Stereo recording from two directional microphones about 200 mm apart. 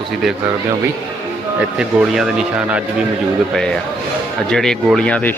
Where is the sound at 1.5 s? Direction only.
5° right (ahead or behind).